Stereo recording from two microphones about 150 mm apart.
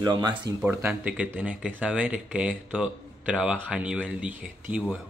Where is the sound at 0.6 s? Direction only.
10° right (ahead or behind).